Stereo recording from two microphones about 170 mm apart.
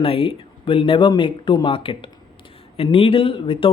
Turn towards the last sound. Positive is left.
turn(degrees=30)  # may be behind; listen again after turning